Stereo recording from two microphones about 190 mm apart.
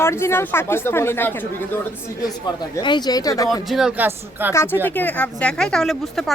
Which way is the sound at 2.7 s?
25° left (ahead or behind).